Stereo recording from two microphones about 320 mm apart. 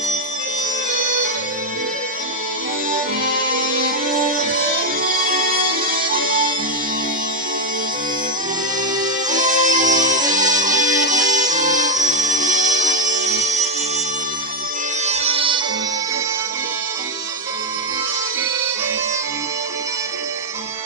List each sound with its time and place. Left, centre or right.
0.9 s music: right
2.9 s music: right
8.9 s music: right
15.0 s music: centre